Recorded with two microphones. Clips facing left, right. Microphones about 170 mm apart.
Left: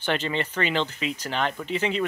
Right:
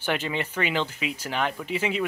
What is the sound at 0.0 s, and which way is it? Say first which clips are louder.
Speech: left 1 dB; 10° right (ahead or behind).